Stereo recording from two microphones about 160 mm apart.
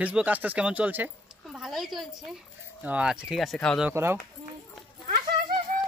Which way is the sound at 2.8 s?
10° right (ahead or behind).